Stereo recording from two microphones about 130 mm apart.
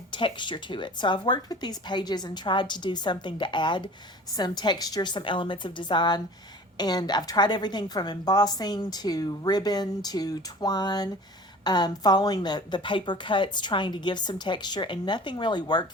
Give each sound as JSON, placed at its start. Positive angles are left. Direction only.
{"t": 0.1, "sound": "a woman's voice", "side_deg": 40}